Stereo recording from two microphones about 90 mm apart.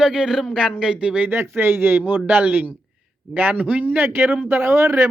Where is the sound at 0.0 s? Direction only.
10° right (ahead or behind).